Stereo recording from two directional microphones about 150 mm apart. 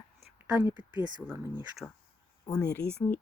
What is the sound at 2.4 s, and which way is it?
Speech, 20° left (ahead or behind).